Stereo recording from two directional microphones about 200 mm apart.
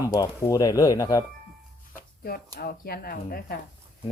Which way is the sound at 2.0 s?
50° left (ahead or behind).